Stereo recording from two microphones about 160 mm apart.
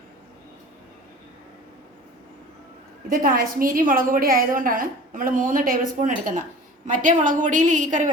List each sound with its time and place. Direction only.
3.1 s a woman's voice: 60° right (ahead or behind)